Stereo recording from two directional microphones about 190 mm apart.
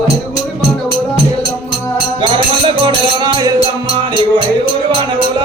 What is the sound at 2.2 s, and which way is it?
Music, 25° right (ahead or behind).